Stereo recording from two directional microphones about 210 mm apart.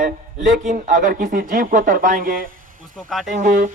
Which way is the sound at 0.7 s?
40° right (ahead or behind).